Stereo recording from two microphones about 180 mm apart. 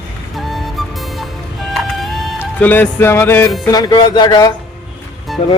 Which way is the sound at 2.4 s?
10° left (ahead or behind).